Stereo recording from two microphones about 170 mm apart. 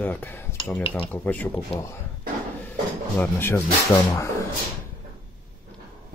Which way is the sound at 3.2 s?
10° left (ahead or behind).